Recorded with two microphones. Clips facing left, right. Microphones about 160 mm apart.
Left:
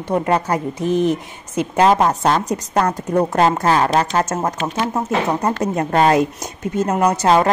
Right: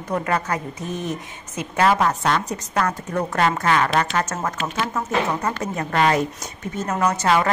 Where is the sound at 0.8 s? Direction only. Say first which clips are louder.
Left 10 dB; 85° left.